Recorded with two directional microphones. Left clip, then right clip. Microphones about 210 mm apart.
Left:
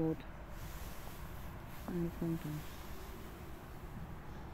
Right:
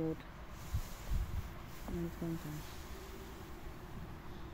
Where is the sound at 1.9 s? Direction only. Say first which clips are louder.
Left 3 dB; 10° left (ahead or behind).